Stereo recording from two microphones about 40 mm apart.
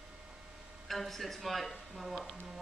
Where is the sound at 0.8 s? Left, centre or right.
Centre.